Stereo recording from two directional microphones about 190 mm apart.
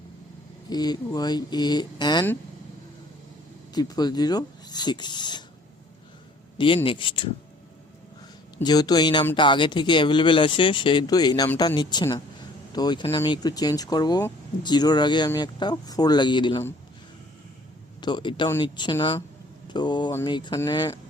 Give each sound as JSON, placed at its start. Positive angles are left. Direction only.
{"t": 0.7, "sound": "speech", "side_deg": 20}
{"t": 3.8, "sound": "speech", "side_deg": 20}
{"t": 6.8, "sound": "speech", "side_deg": 25}
{"t": 8.6, "sound": "speech", "side_deg": 20}
{"t": 18.0, "sound": "speech", "side_deg": 25}